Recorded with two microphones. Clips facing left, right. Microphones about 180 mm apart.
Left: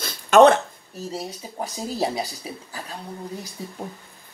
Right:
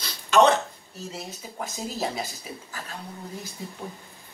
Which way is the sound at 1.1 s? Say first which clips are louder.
Left 7 dB; 35° left (ahead or behind).